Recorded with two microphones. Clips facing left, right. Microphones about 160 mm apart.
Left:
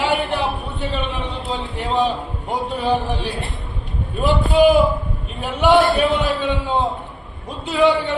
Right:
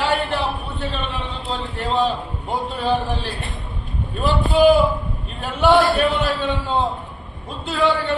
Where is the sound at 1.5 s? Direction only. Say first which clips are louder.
Even; 15° left (ahead or behind).